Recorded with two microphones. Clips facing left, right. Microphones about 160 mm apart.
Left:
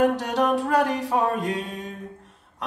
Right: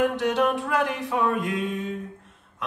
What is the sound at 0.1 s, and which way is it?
Music, 35° left (ahead or behind).